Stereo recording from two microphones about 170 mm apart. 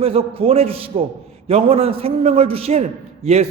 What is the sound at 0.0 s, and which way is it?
A man's voice, 35° right (ahead or behind).